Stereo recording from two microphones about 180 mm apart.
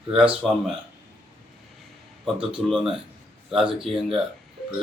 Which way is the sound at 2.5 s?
5° right (ahead or behind).